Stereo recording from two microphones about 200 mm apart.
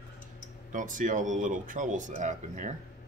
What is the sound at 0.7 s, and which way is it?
Speech, 40° right (ahead or behind).